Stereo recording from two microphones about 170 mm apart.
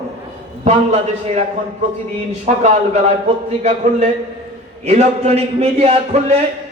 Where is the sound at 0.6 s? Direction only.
40° right (ahead or behind).